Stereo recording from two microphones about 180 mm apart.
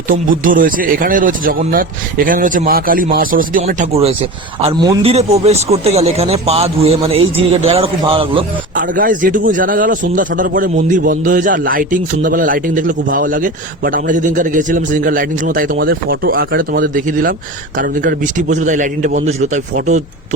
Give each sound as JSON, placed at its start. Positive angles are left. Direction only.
{"t": 0.1, "sound": "a man's voice", "side_deg": -50}
{"t": 3.9, "sound": "speech", "side_deg": -35}
{"t": 8.7, "sound": "a man's voice", "side_deg": -50}